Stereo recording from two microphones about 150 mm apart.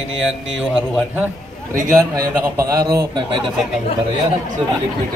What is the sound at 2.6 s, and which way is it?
Speech, 20° right (ahead or behind).